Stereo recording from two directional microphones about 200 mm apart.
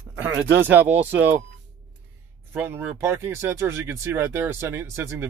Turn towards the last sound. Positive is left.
turn(degrees=-15)  # may be behind; listen again after turning